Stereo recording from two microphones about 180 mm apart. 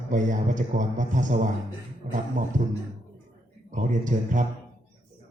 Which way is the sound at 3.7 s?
45° right (ahead or behind).